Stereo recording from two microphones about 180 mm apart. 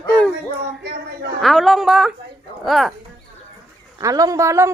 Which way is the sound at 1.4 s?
Centre (ahead or behind).